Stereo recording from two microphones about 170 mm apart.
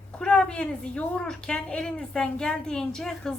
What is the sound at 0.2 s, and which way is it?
A woman's voice, 5° left (ahead or behind).